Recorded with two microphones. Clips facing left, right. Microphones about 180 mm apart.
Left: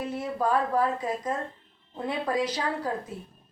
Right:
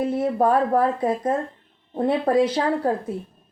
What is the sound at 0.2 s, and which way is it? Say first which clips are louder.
Speech: right 6 dB; 55° right (ahead or behind).